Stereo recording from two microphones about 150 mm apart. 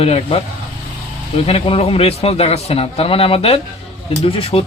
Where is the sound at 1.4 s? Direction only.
40° left (ahead or behind).